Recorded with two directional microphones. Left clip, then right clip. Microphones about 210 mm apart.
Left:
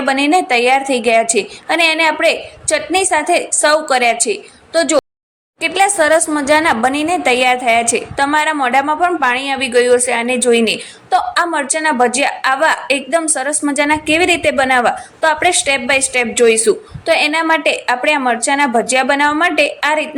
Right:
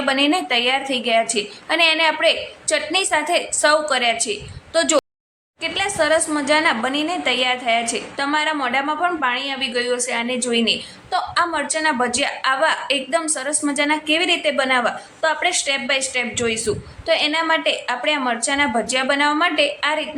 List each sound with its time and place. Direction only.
0.0 s a woman's voice: 20° left (ahead or behind)
5.6 s a woman's voice: 25° left (ahead or behind)